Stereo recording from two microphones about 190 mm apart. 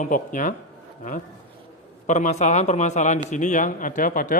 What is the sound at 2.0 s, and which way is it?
Speech, 40° left (ahead or behind).